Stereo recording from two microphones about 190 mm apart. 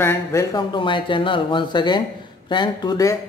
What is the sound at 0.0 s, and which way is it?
A man's voice, 15° left (ahead or behind).